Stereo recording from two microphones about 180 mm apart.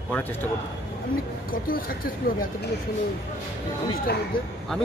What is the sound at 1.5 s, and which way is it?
Speech, 50° left (ahead or behind).